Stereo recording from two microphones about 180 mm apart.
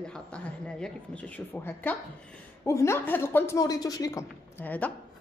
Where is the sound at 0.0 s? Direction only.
5° left (ahead or behind).